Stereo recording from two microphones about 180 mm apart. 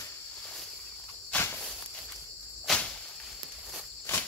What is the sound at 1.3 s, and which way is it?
Walk, 10° left (ahead or behind).